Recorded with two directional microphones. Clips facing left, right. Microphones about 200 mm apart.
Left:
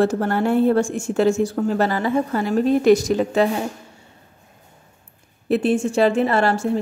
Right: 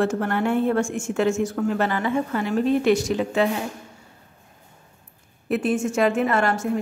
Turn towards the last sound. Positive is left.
turn(degrees=30)  # may be behind; listen again after turning